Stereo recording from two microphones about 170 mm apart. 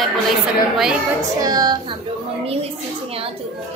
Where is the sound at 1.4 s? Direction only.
25° right (ahead or behind).